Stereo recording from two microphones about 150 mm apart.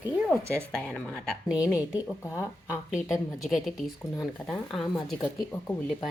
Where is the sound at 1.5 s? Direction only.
5° right (ahead or behind).